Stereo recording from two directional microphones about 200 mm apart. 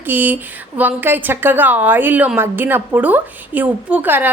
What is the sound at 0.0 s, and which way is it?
A woman's voice, 10° right (ahead or behind).